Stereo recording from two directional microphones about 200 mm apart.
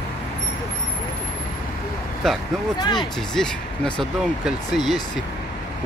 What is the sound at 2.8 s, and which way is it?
Speech, 20° left (ahead or behind).